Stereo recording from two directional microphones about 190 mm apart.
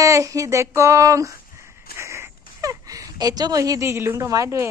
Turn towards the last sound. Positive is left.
turn(degrees=-15)  # may be behind; listen again after turning